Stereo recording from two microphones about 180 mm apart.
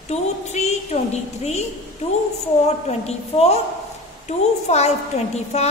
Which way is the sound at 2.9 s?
35° left (ahead or behind).